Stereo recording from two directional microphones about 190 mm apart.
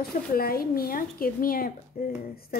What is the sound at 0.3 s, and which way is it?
A woman's voice, 50° left (ahead or behind).